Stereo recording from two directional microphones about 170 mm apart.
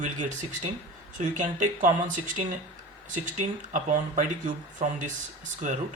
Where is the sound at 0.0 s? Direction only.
45° right (ahead or behind).